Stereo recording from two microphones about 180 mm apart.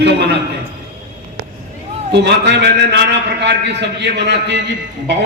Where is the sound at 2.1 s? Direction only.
70° right (ahead or behind).